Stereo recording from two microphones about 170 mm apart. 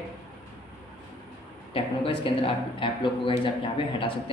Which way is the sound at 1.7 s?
30° left (ahead or behind).